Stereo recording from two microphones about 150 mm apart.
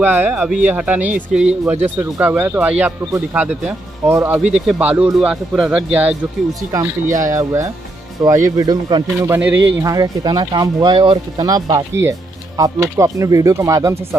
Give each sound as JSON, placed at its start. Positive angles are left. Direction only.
{"t": 0.0, "sound": "speech", "side_deg": -15}
{"t": 4.4, "sound": "speech", "side_deg": -5}
{"t": 7.2, "sound": "speech", "side_deg": -20}
{"t": 9.3, "sound": "speech", "side_deg": -15}
{"t": 9.9, "sound": "speech", "side_deg": -30}